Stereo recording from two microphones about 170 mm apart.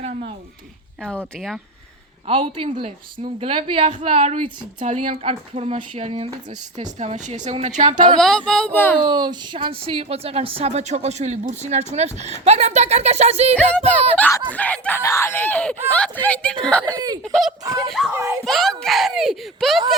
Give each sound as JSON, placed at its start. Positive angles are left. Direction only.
{"t": 2.2, "sound": "a woman's voice", "side_deg": -30}
{"t": 8.2, "sound": "speech", "side_deg": 5}
{"t": 9.0, "sound": "speech", "side_deg": -25}
{"t": 14.2, "sound": "speech", "side_deg": 10}
{"t": 18.1, "sound": "speech", "side_deg": -15}
{"t": 18.4, "sound": "speech", "side_deg": 0}